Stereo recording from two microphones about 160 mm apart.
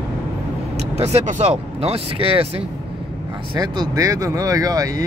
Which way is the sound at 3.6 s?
20° right (ahead or behind).